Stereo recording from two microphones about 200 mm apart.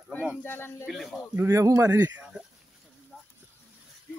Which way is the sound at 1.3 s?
15° right (ahead or behind).